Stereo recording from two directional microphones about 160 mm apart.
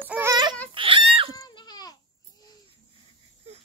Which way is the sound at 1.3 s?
25° left (ahead or behind).